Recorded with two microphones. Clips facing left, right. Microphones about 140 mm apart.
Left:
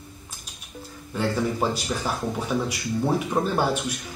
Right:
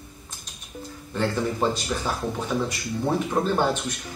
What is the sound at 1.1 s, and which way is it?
Speech, 10° left (ahead or behind).